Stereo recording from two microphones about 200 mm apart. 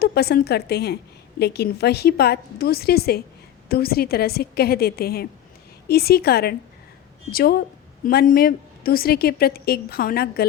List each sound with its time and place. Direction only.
0.0 s a woman's voice: 50° left (ahead or behind)